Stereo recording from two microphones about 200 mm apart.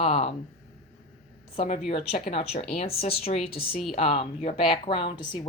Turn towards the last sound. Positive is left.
turn(degrees=25)  # may be behind; listen again after turning